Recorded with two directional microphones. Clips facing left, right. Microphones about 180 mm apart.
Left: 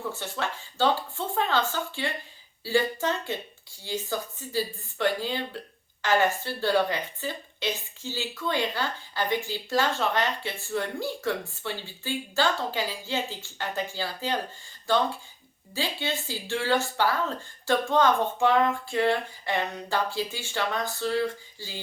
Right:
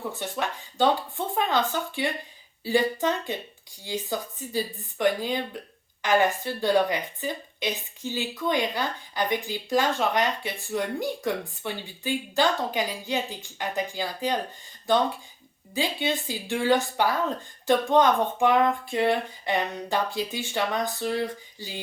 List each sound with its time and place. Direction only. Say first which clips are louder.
0.1 s a woman's voice: right 2 dB; 15° right (ahead or behind)